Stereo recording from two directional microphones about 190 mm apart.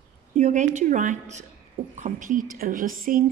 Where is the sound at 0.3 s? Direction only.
40° right (ahead or behind).